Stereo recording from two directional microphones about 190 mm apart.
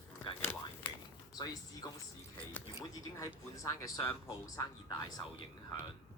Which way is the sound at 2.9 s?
20° left (ahead or behind).